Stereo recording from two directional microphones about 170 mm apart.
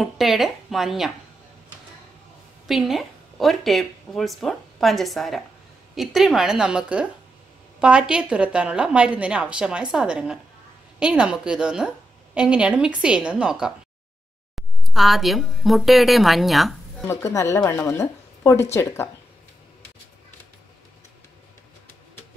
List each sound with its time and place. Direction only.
0.0 s speech: centre (ahead or behind)
2.7 s a woman's voice: centre (ahead or behind)
17.1 s a woman's voice: 15° left (ahead or behind)